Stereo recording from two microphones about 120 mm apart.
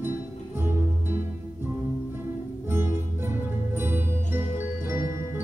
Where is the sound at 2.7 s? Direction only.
20° right (ahead or behind).